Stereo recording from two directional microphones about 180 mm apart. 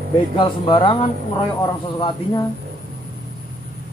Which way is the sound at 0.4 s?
25° left (ahead or behind).